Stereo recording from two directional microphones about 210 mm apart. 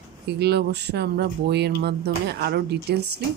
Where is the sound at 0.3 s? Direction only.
50° right (ahead or behind).